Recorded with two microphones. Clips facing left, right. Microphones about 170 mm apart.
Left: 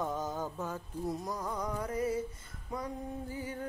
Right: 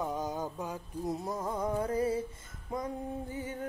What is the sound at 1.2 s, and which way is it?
Music, 25° right (ahead or behind).